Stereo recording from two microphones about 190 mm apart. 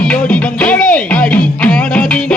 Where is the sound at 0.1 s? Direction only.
5° left (ahead or behind).